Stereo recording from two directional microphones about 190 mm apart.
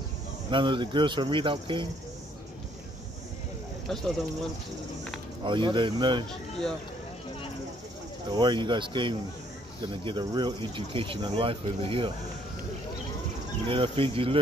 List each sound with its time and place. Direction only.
0.5 s speech: 25° right (ahead or behind)
3.9 s speech: centre (ahead or behind)
5.4 s speech: 25° right (ahead or behind)
8.3 s speech: 25° right (ahead or behind)
13.7 s speech: 25° right (ahead or behind)